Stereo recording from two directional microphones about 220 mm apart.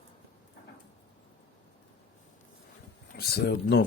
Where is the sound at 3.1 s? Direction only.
45° left (ahead or behind).